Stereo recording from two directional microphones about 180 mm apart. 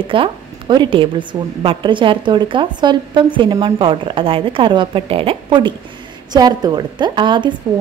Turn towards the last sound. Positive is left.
turn(degrees=-25)  # may be behind; listen again after turning